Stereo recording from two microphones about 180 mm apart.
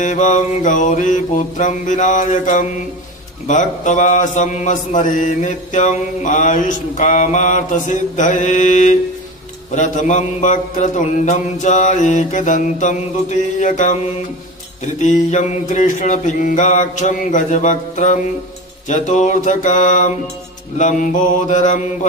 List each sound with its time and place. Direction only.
0.0 s mantra: 45° left (ahead or behind)
14.9 s mantra: 40° left (ahead or behind)